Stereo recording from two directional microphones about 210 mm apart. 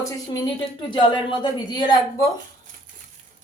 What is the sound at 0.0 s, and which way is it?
Speech, 20° left (ahead or behind).